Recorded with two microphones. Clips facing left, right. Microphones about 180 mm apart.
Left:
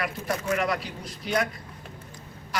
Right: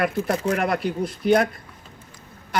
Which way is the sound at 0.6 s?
55° right (ahead or behind).